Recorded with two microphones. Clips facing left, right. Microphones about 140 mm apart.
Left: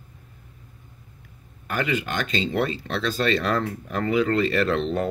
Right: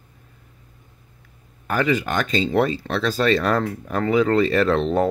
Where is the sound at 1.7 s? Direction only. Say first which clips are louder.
Right 5 dB; 40° right (ahead or behind).